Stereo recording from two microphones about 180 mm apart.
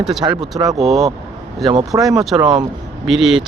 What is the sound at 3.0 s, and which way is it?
Speech, centre (ahead or behind).